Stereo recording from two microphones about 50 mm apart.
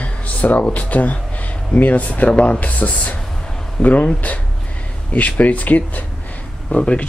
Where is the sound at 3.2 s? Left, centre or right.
Centre.